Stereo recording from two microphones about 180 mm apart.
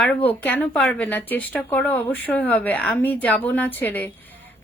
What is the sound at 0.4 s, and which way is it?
A woman's voice, 10° left (ahead or behind).